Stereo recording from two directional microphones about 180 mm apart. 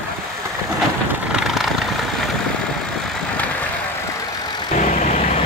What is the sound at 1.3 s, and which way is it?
Vehicle, centre (ahead or behind).